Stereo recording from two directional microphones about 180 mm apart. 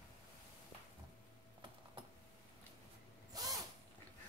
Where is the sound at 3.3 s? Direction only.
20° right (ahead or behind).